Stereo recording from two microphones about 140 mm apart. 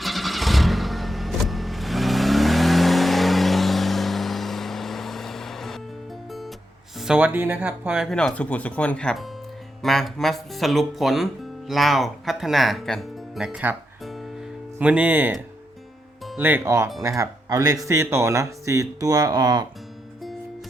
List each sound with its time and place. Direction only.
0.0 s vehicle: centre (ahead or behind)
7.0 s speech: 10° right (ahead or behind)
8.1 s speech: 5° left (ahead or behind); by 13.7 s 10° right (ahead or behind)
14.8 s speech: 10° right (ahead or behind)
16.4 s speech: 15° right (ahead or behind)